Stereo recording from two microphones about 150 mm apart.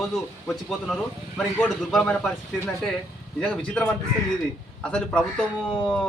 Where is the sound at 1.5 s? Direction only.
5° left (ahead or behind).